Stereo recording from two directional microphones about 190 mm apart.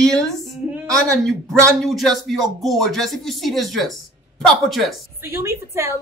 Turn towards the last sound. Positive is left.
turn(degrees=-15)  # may be behind; listen again after turning